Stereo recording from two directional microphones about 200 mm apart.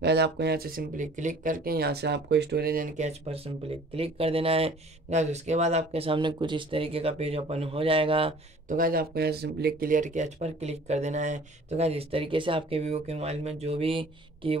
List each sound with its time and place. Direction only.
0.0 s speech: 55° right (ahead or behind); by 8.4 s 25° right (ahead or behind)
8.6 s speech: 45° right (ahead or behind); by 14.6 s 25° right (ahead or behind)